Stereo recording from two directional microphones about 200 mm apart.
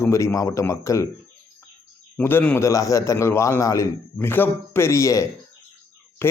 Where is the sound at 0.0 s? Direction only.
15° left (ahead or behind).